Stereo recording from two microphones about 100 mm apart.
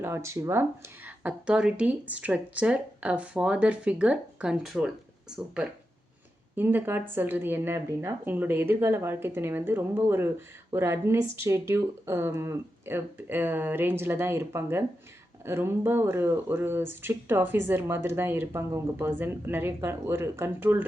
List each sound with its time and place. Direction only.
0.0 s speech: 25° right (ahead or behind); by 5.4 s 5° right (ahead or behind)
6.6 s speech: 20° right (ahead or behind)